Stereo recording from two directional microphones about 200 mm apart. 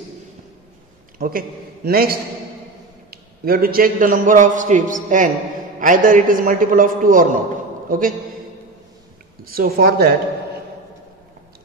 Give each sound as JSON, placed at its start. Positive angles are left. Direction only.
{"t": 1.1, "sound": "a sound", "side_deg": -45}
{"t": 1.9, "sound": "a man's voice", "side_deg": -50}
{"t": 9.4, "sound": "a man's voice", "side_deg": -45}